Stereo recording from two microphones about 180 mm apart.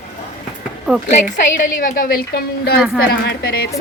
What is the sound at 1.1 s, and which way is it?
A woman's voice, 45° left (ahead or behind).